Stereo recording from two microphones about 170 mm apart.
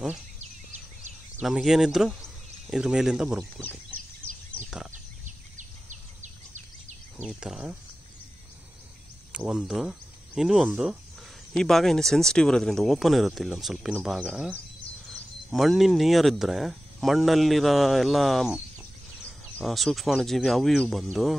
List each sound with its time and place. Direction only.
1.4 s speech: centre (ahead or behind)
4.6 s a sound: 5° right (ahead or behind)
5.2 s a sound: 50° right (ahead or behind)
7.2 s speech: 5° right (ahead or behind)
9.3 s speech: 5° right (ahead or behind)
15.5 s speech: centre (ahead or behind)